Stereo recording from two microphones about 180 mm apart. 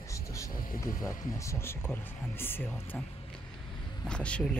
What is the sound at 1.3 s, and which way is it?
Speech, 15° left (ahead or behind).